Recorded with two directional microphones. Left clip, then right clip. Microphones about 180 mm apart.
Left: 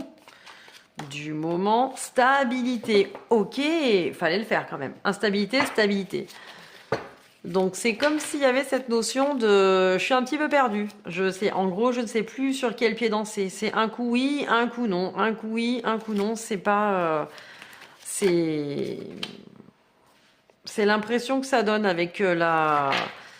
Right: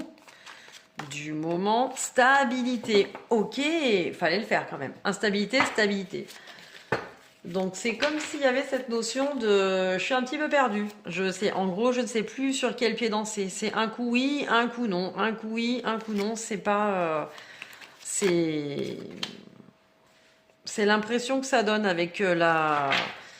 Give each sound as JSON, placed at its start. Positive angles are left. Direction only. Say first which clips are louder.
{"t": 1.1, "sound": "a woman's voice", "louder": "left 2 dB", "side_deg": 30}
{"t": 7.5, "sound": "speech", "louder": "left 5 dB", "side_deg": 50}
{"t": 10.8, "sound": "speech", "louder": "left 3 dB", "side_deg": 20}
{"t": 20.7, "sound": "speech", "louder": "left 2 dB", "side_deg": 25}